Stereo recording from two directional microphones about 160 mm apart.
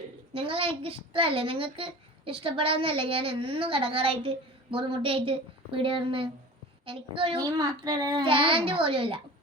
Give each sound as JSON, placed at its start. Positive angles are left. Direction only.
{"t": 0.3, "sound": "a child's voice", "side_deg": -35}
{"t": 7.3, "sound": "a child's voice", "side_deg": -25}